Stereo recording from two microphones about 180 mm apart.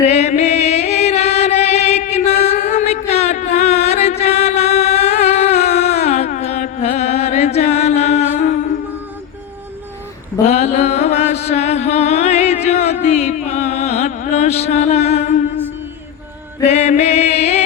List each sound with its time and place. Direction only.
0.0 s music: 35° left (ahead or behind)
10.4 s mantra: 35° left (ahead or behind)
16.6 s music: 35° left (ahead or behind)